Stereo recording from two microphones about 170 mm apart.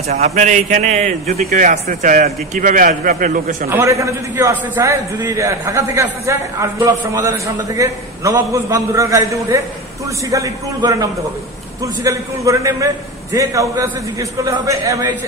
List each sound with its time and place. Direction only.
0.1 s a man's voice: 40° right (ahead or behind)
3.7 s a man's voice: 15° right (ahead or behind)